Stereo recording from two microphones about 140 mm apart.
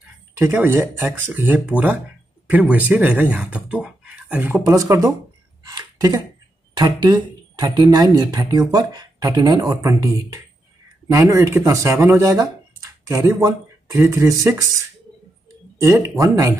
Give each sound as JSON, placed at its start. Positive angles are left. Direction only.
{"t": 0.4, "sound": "speech", "side_deg": -15}
{"t": 5.6, "sound": "a sound", "side_deg": -25}
{"t": 6.8, "sound": "speech", "side_deg": -30}
{"t": 15.8, "sound": "speech", "side_deg": -20}